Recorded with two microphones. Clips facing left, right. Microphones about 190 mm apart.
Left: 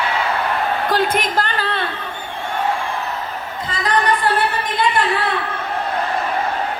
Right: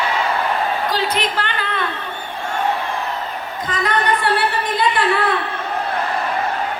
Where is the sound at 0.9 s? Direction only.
50° left (ahead or behind); by 1.8 s 35° left (ahead or behind).